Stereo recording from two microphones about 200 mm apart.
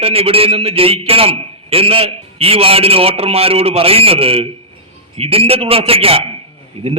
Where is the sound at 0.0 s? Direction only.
30° right (ahead or behind).